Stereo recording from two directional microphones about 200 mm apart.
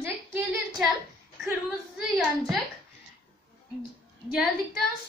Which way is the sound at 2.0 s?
Centre (ahead or behind).